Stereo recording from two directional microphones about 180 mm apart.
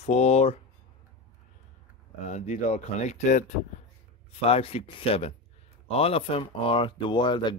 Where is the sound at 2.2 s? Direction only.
40° left (ahead or behind).